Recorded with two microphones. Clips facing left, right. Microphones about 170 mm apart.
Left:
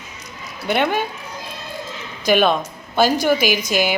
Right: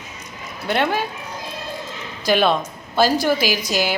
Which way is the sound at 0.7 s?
Centre (ahead or behind).